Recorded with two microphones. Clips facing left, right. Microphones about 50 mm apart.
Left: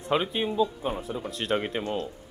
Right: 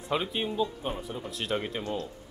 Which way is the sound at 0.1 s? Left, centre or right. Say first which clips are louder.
Left 4 dB; left.